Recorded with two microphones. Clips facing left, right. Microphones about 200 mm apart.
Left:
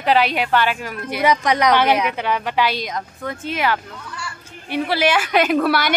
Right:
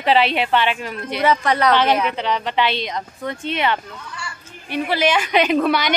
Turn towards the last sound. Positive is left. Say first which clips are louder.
# even
turn(degrees=5)  # may be behind; listen again after turning